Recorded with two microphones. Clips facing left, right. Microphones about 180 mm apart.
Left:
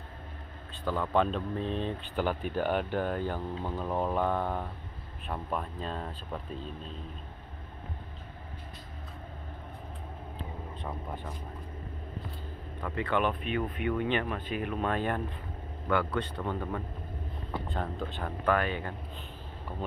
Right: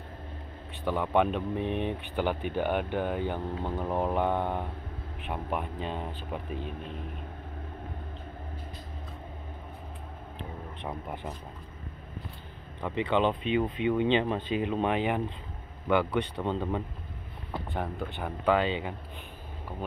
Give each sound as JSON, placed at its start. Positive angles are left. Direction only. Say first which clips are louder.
{"t": 0.8, "sound": "speech", "louder": "right 2 dB", "side_deg": -15}
{"t": 3.3, "sound": "speech", "louder": "right 2 dB", "side_deg": -20}
{"t": 10.9, "sound": "speech", "louder": "right 3 dB", "side_deg": -10}
{"t": 12.8, "sound": "speech", "louder": "right 3 dB", "side_deg": -20}